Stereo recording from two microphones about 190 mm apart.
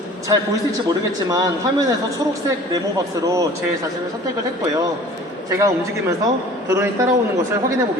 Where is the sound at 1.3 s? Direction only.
20° right (ahead or behind).